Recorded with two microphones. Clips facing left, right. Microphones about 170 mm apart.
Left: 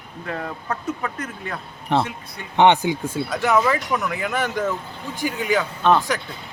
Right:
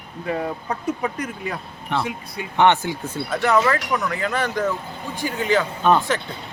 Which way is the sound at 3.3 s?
Centre (ahead or behind).